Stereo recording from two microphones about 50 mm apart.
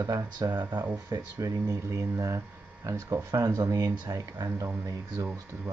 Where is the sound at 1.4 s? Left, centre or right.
Right.